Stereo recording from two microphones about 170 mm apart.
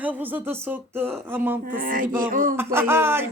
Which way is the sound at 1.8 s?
55° right (ahead or behind).